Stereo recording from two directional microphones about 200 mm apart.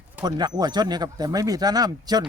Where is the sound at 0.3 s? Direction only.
20° right (ahead or behind).